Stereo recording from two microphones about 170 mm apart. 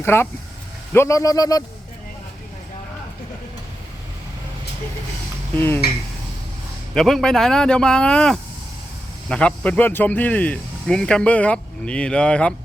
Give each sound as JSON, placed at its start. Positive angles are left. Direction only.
{"t": 0.0, "sound": "speech", "side_deg": 15}
{"t": 5.5, "sound": "speech", "side_deg": 15}
{"t": 6.9, "sound": "speech", "side_deg": 0}